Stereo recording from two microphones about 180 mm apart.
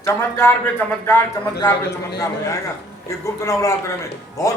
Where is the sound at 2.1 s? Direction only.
15° left (ahead or behind).